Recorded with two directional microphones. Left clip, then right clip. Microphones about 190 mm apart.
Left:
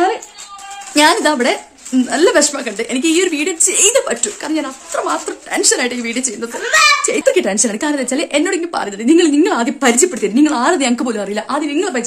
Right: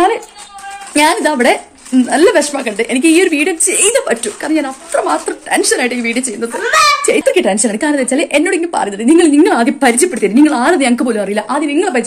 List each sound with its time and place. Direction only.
0.9 s a woman's voice: 15° left (ahead or behind)
9.5 s a woman's voice: 10° left (ahead or behind)